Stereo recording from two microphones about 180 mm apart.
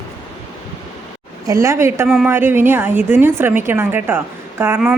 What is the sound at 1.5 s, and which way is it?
A woman's voice, 15° right (ahead or behind).